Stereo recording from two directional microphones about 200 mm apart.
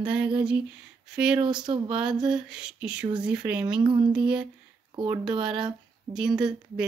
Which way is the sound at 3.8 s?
25° right (ahead or behind).